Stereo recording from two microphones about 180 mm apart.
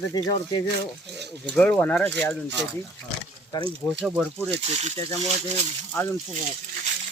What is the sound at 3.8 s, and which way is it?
Speech, 5° left (ahead or behind).